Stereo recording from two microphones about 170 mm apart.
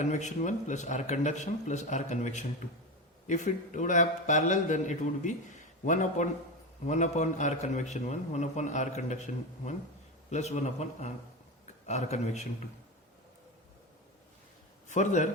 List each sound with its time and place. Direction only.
0.0 s a man's voice: 45° left (ahead or behind)
14.8 s a man's voice: 45° left (ahead or behind)